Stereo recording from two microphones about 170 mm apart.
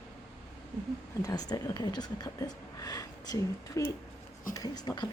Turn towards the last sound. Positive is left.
turn(degrees=25)  # may be behind; listen again after turning